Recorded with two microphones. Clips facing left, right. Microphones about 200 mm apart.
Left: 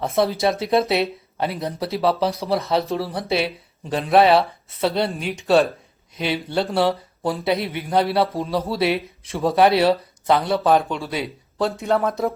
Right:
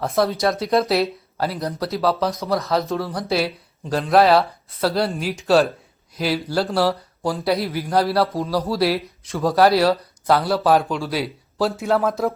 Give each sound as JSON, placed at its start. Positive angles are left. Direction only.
{"t": 0.0, "sound": "speech", "side_deg": 0}
{"t": 2.1, "sound": "speech", "side_deg": 30}
{"t": 2.9, "sound": "speech", "side_deg": 5}